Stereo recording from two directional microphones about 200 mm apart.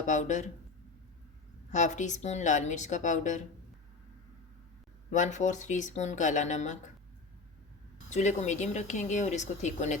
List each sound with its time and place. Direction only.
0.0 s speech: 40° left (ahead or behind)
1.7 s speech: 35° left (ahead or behind)
5.1 s speech: 35° left (ahead or behind)
8.1 s speech: 35° left (ahead or behind)